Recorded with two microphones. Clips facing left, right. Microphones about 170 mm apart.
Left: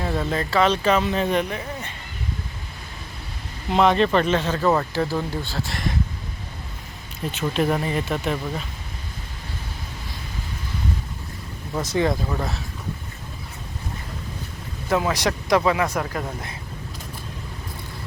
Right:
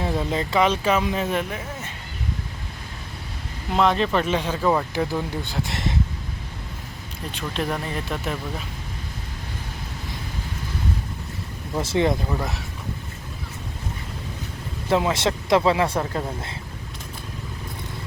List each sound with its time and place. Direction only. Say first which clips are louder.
0.0 s speech: even; 20° right (ahead or behind)
3.7 s speech: left 2 dB; centre (ahead or behind)
5.4 s speech: even; 20° right (ahead or behind)
7.3 s speech: left 5 dB; 5° left (ahead or behind)
11.8 s speech: right 1 dB; 25° right (ahead or behind)
14.8 s speech: right 1 dB; 25° right (ahead or behind)